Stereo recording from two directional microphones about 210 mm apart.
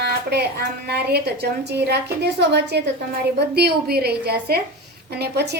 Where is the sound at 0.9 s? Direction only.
50° right (ahead or behind).